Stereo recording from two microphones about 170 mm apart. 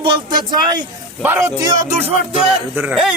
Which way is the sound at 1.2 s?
15° right (ahead or behind).